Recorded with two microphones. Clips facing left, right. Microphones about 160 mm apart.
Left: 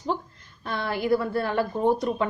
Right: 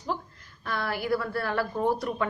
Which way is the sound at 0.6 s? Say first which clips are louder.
Left 3 dB; 25° left (ahead or behind).